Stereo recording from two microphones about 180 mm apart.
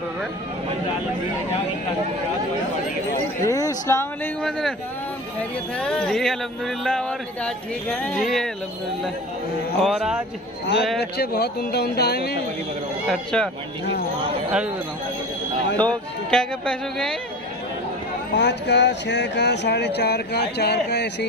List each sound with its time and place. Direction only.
3.4 s speech: 20° left (ahead or behind)
4.4 s speech: centre (ahead or behind)
9.8 s speech: centre (ahead or behind)
11.0 s speech: 65° left (ahead or behind)
13.1 s speech: 5° left (ahead or behind)
15.8 s speech: 5° left (ahead or behind)
18.3 s speech: 75° left (ahead or behind)